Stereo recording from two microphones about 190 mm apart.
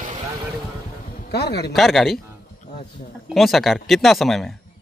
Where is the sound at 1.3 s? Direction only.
60° left (ahead or behind).